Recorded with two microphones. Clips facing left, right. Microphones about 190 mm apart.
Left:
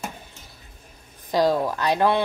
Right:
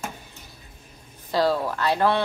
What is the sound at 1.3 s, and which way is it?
Speech, 15° left (ahead or behind).